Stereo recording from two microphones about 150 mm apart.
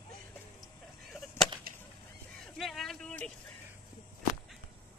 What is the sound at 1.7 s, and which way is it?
Chop, 75° right (ahead or behind).